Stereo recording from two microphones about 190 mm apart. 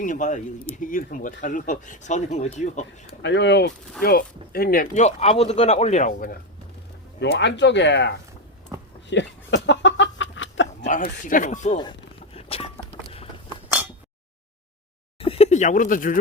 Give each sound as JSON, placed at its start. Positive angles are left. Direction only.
{"t": 0.0, "sound": "speech", "side_deg": 40}
{"t": 0.8, "sound": "speech", "side_deg": 45}
{"t": 3.2, "sound": "speech", "side_deg": 70}
{"t": 4.0, "sound": "speech", "side_deg": 55}
{"t": 7.2, "sound": "speech", "side_deg": 70}
{"t": 9.0, "sound": "a sound", "side_deg": 70}
{"t": 10.8, "sound": "speech", "side_deg": 45}
{"t": 11.8, "sound": "a sound", "side_deg": 25}
{"t": 15.2, "sound": "a sound", "side_deg": 30}